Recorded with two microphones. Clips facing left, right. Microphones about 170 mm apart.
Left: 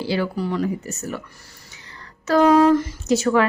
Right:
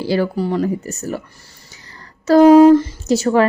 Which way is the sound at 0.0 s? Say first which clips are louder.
Right 5 dB; 40° right (ahead or behind).